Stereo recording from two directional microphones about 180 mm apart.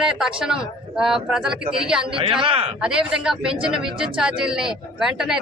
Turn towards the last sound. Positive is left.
turn(degrees=0)  # may be behind; listen again after turning